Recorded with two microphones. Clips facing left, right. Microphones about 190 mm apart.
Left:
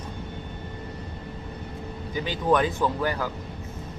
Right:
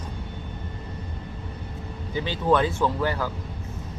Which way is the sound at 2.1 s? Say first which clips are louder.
Right 1 dB; 15° left (ahead or behind).